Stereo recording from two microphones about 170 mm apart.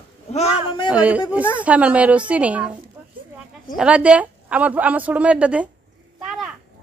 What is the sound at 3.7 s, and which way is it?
A woman's voice, 5° right (ahead or behind).